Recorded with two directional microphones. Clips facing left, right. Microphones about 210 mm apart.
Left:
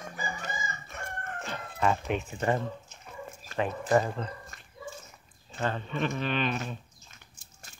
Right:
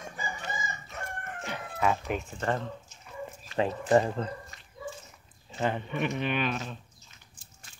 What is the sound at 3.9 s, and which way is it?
Speech, 25° right (ahead or behind).